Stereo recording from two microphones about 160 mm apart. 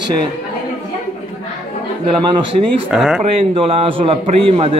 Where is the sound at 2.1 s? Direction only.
30° right (ahead or behind).